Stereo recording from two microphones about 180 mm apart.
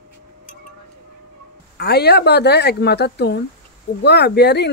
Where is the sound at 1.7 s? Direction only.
65° left (ahead or behind).